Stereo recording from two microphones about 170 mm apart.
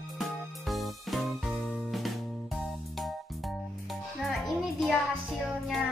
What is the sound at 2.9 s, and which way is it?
Music, centre (ahead or behind).